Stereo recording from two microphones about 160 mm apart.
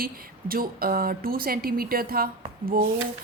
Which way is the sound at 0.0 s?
65° right (ahead or behind).